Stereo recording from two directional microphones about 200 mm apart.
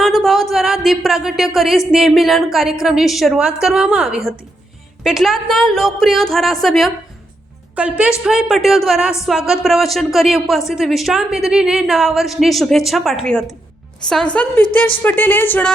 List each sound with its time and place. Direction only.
0.0 s speech: centre (ahead or behind)